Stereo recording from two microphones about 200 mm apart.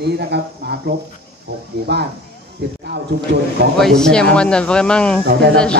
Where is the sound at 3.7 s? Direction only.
Centre (ahead or behind).